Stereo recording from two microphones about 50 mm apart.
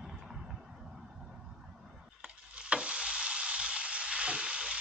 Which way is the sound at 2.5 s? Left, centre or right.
Right.